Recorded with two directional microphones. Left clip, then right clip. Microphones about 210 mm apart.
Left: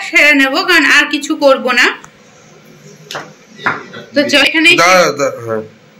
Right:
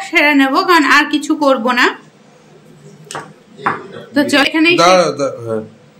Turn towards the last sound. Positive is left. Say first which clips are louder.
# left 2 dB
turn(degrees=-5)  # may be behind; listen again after turning